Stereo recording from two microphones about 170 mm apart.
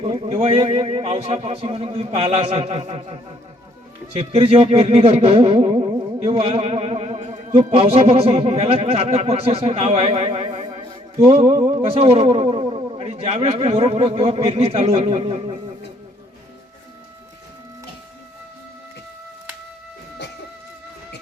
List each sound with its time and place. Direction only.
0.0 s a man's voice: 35° right (ahead or behind)